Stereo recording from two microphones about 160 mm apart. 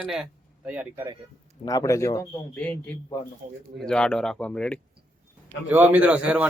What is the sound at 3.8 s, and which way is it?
A man's voice, 5° left (ahead or behind).